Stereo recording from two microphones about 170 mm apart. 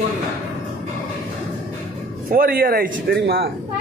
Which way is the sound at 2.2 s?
60° right (ahead or behind).